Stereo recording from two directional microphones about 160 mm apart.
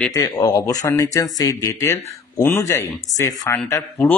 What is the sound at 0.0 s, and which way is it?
Speech, 20° left (ahead or behind).